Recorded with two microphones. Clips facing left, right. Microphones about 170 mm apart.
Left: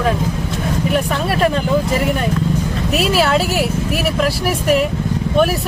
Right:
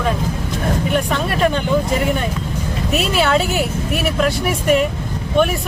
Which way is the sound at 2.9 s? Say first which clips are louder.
Left 1 dB; centre (ahead or behind).